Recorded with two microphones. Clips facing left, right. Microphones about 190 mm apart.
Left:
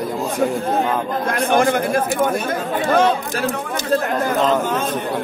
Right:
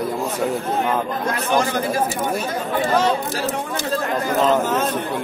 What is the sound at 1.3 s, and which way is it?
A man's voice, 55° left (ahead or behind).